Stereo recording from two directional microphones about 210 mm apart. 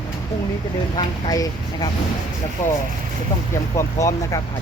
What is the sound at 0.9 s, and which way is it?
Speech, 20° left (ahead or behind).